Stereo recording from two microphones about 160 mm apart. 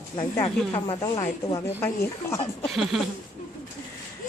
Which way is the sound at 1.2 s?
20° left (ahead or behind).